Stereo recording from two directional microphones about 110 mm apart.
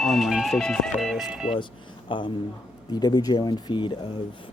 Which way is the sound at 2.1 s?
45° left (ahead or behind).